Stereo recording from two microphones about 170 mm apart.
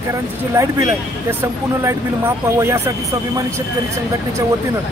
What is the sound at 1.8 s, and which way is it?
Speech, 15° right (ahead or behind).